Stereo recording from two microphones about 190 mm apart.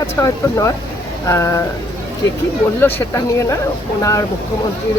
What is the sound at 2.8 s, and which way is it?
Speech, 15° left (ahead or behind).